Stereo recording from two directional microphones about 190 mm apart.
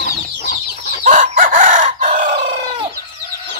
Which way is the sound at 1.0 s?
40° right (ahead or behind).